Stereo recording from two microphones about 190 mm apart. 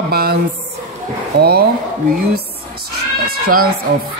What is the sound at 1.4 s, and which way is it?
Speech, 55° right (ahead or behind).